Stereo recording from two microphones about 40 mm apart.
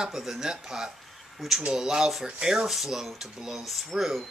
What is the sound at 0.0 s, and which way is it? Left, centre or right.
Speech, centre.